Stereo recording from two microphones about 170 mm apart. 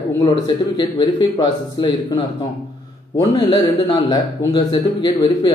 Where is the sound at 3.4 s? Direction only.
25° left (ahead or behind).